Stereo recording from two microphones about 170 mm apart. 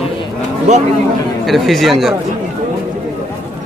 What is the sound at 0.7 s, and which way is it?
Speech, 45° right (ahead or behind).